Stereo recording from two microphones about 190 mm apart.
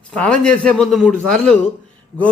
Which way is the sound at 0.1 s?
5° left (ahead or behind).